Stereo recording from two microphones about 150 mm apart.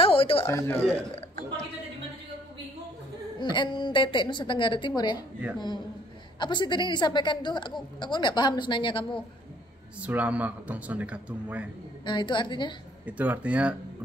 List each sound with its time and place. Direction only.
0.0 s music: 40° left (ahead or behind)
0.5 s speech: 15° left (ahead or behind)
3.3 s a woman's voice: 30° left (ahead or behind)
6.4 s a woman's voice: 30° left (ahead or behind)
10.0 s a man's voice: 10° right (ahead or behind)
12.0 s a woman's voice: 30° left (ahead or behind)
13.0 s a man's voice: 10° right (ahead or behind)